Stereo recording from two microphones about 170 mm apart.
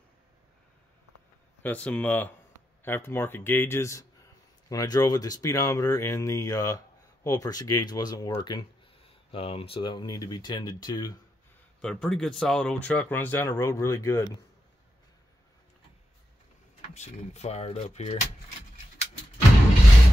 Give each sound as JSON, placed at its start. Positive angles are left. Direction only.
{"t": 1.6, "sound": "speech", "side_deg": 10}
{"t": 11.8, "sound": "speech", "side_deg": 5}
{"t": 16.9, "sound": "speech", "side_deg": 40}